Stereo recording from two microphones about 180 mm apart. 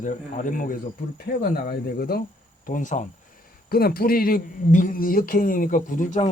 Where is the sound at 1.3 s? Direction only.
70° left (ahead or behind).